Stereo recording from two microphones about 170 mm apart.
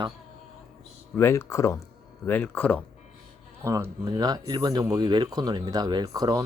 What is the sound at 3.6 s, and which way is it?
Speech, 20° right (ahead or behind).